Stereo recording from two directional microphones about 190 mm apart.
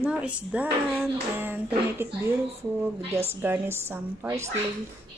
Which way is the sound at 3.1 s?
30° right (ahead or behind).